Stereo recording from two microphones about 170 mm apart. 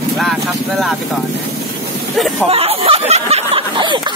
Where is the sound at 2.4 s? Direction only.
35° right (ahead or behind).